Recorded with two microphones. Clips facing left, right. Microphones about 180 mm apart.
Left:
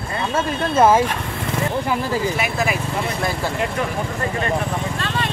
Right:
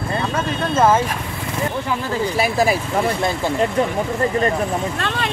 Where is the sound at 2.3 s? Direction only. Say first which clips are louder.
Right 4 dB; 35° right (ahead or behind).